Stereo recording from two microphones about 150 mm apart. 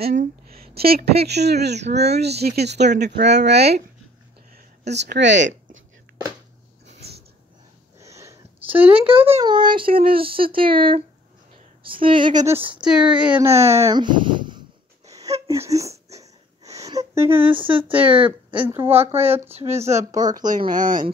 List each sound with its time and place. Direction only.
0.0 s a woman's voice: 75° right (ahead or behind)
8.0 s a sound: 20° right (ahead or behind)
9.0 s child singing: 35° right (ahead or behind)
12.7 s speech: 5° right (ahead or behind)
13.4 s speech: 20° right (ahead or behind)
13.9 s a sound: 30° right (ahead or behind)
15.8 s a sound: 45° right (ahead or behind)
16.2 s wheeze: 20° right (ahead or behind)
17.1 s speech: 20° right (ahead or behind)
17.4 s child singing: 35° right (ahead or behind)
19.5 s speech: 45° right (ahead or behind)
19.9 s speech: 20° right (ahead or behind)
20.3 s speech: 60° right (ahead or behind)